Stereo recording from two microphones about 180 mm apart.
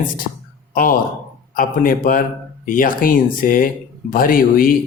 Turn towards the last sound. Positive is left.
turn(degrees=50)  # may be behind; listen again after turning